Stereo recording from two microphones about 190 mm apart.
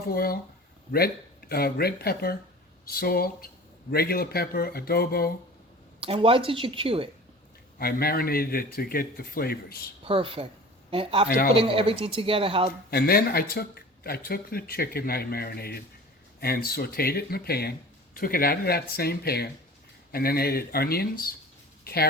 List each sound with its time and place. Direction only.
0.1 s speech: 50° left (ahead or behind)
6.0 s a woman's voice: 30° right (ahead or behind)
7.8 s speech: 50° left (ahead or behind)
10.0 s a woman's voice: 30° right (ahead or behind)
11.3 s speech: 50° left (ahead or behind)
11.5 s a woman's voice: 30° right (ahead or behind)
12.9 s speech: 55° left (ahead or behind)